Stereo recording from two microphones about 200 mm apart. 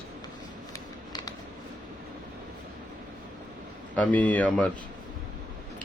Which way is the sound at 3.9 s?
5° left (ahead or behind).